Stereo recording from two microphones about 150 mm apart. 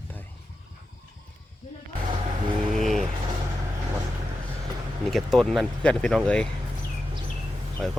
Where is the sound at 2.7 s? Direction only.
Centre (ahead or behind).